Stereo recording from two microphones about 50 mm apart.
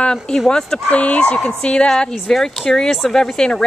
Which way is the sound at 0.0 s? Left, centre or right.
Centre.